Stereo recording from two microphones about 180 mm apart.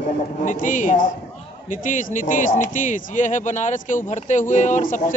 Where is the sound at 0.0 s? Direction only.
45° left (ahead or behind).